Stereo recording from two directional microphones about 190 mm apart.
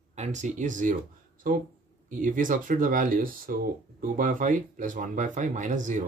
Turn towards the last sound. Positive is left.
turn(degrees=-40)  # may be behind; listen again after turning